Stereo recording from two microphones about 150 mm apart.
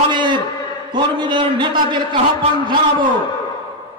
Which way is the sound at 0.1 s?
30° right (ahead or behind).